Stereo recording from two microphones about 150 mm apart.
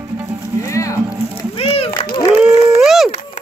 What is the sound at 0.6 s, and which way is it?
Music, 20° left (ahead or behind).